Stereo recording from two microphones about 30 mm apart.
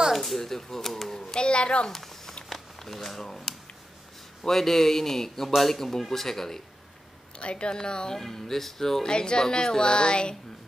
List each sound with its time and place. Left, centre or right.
0.1 s a sound: centre
0.4 s speech: centre
1.1 s a sound: centre
1.4 s a child's voice: left
1.9 s a sound: centre
2.5 s a man's voice: centre
7.3 s a woman's voice: left
7.8 s music: left
8.2 s a man's voice: centre
9.0 s music: left